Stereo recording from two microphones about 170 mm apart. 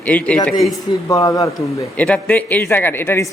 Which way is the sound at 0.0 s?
10° left (ahead or behind).